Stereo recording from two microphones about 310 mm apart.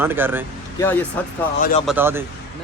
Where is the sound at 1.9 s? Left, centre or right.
Centre.